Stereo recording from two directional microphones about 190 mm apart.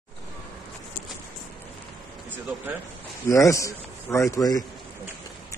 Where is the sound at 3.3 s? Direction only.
15° left (ahead or behind).